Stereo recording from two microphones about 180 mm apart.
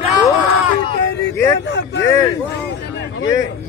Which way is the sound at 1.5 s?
75° left (ahead or behind).